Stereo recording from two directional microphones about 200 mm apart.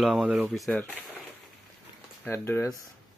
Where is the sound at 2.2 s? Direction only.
10° left (ahead or behind).